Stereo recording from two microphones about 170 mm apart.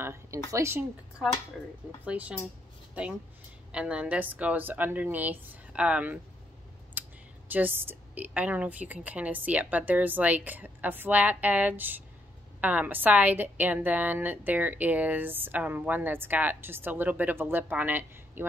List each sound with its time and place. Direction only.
0.0 s a sound: 15° right (ahead or behind)
0.5 s a woman's voice: 15° right (ahead or behind)
7.0 s computer keyboard: 10° right (ahead or behind)
7.5 s a woman's voice: 10° right (ahead or behind)